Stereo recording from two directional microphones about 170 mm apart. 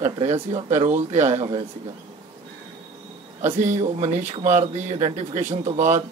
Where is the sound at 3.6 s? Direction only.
45° right (ahead or behind).